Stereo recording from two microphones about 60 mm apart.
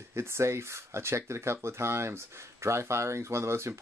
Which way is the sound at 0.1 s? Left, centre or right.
Right.